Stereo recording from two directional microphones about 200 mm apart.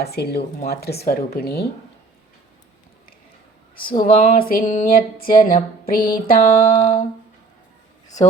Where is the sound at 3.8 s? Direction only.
45° left (ahead or behind).